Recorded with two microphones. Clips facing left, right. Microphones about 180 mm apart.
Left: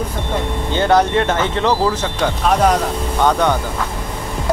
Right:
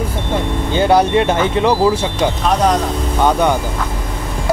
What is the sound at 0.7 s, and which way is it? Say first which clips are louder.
Speech: right 2 dB; 10° right (ahead or behind).